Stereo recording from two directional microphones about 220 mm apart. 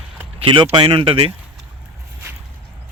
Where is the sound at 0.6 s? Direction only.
20° right (ahead or behind).